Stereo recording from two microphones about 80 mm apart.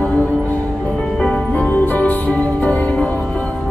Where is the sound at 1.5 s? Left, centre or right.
Left.